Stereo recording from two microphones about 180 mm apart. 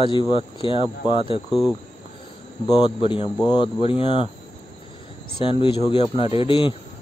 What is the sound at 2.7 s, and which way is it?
Speech, 25° left (ahead or behind).